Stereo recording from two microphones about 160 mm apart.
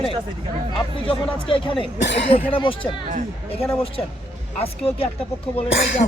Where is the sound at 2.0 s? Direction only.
90° left.